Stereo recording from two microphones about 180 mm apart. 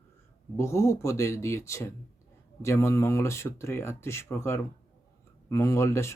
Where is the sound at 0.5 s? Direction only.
15° left (ahead or behind).